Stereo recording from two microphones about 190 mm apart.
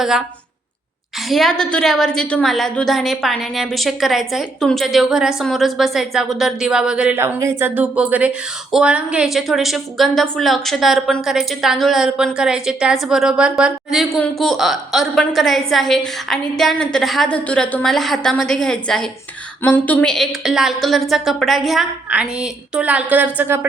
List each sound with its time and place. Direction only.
1.3 s a woman's voice: centre (ahead or behind)